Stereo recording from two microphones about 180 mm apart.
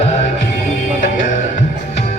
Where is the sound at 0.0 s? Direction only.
40° left (ahead or behind).